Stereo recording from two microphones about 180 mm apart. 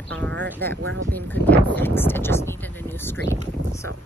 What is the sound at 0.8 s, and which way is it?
Speech, 80° right.